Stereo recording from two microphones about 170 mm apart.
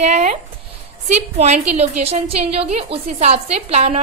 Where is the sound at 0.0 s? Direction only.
45° right (ahead or behind).